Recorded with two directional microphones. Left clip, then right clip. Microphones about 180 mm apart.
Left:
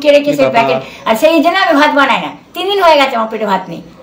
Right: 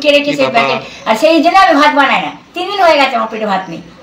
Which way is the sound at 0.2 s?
40° left (ahead or behind).